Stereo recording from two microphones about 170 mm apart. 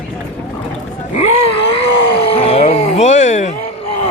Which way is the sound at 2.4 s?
35° left (ahead or behind).